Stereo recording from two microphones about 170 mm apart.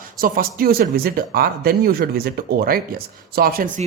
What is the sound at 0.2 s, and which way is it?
Speech, 60° right (ahead or behind).